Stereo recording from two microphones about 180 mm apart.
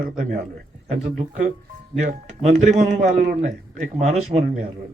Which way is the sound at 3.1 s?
60° right (ahead or behind).